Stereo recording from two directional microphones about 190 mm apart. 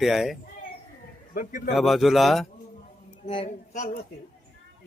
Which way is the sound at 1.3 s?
45° left (ahead or behind).